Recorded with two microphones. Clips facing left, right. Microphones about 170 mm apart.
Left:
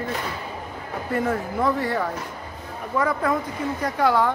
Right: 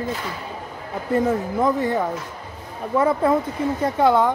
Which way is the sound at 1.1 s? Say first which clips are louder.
Right 4 dB; 20° right (ahead or behind).